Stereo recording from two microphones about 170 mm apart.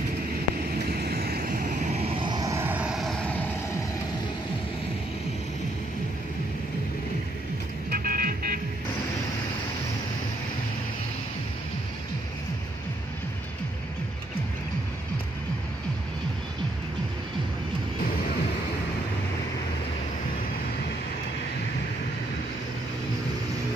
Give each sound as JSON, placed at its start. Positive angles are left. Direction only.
{"t": 1.0, "sound": "a sound", "side_deg": -65}
{"t": 2.1, "sound": "vehicle", "side_deg": -25}
{"t": 7.9, "sound": "vehicle", "side_deg": -60}